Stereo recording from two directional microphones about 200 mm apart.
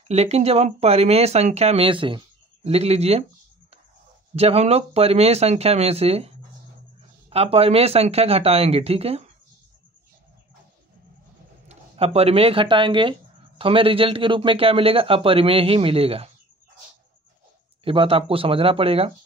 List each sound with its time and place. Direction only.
0.1 s speech: 30° right (ahead or behind)
4.4 s a man's voice: 30° right (ahead or behind)
11.6 s a man's voice: 30° right (ahead or behind)
17.8 s a man's voice: 25° right (ahead or behind)